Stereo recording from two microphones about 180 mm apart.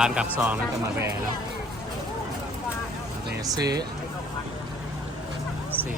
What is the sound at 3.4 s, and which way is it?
Speech, 20° right (ahead or behind).